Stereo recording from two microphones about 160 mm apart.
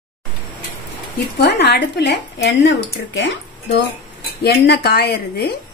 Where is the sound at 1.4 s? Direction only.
90° left.